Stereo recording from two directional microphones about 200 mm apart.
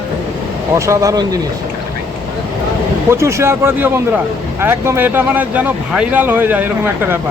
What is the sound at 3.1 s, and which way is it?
Speech, 15° right (ahead or behind).